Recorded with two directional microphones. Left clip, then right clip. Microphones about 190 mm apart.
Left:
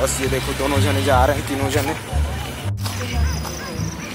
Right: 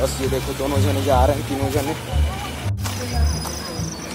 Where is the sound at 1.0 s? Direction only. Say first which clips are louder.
Left 1 dB; 10° left (ahead or behind).